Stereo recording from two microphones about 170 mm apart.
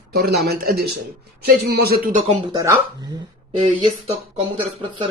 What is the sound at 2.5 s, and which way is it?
Speech, 20° right (ahead or behind).